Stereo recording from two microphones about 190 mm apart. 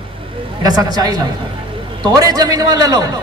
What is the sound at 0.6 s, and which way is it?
A man's voice, 20° right (ahead or behind).